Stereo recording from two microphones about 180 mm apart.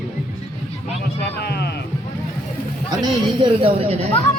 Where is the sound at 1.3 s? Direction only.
65° left (ahead or behind).